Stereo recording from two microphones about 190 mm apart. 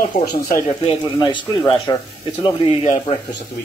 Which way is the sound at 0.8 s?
25° left (ahead or behind).